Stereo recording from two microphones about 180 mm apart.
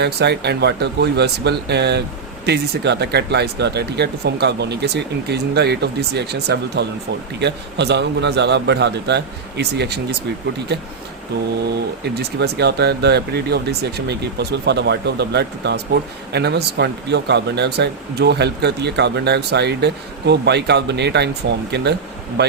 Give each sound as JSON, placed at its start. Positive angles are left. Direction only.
{"t": 0.0, "sound": "speech", "side_deg": -65}
{"t": 12.0, "sound": "speech", "side_deg": -65}